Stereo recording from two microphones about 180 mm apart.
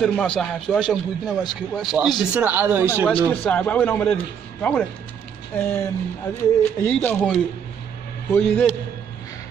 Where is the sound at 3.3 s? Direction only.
10° left (ahead or behind).